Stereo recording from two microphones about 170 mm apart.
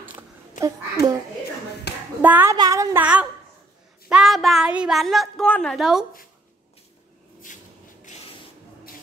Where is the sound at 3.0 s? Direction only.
5° right (ahead or behind).